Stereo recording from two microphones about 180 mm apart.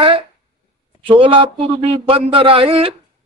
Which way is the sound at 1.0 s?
30° right (ahead or behind).